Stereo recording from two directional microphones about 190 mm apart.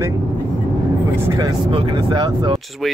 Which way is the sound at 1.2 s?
15° right (ahead or behind).